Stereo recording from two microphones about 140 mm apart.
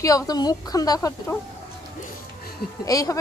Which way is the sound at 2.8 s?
25° left (ahead or behind).